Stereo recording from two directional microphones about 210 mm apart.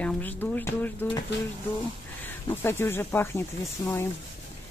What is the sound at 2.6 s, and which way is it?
Speech, 10° left (ahead or behind).